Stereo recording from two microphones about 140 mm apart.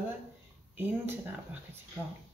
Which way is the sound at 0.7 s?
15° right (ahead or behind).